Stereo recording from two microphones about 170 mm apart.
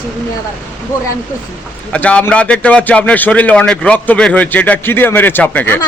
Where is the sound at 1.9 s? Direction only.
10° left (ahead or behind).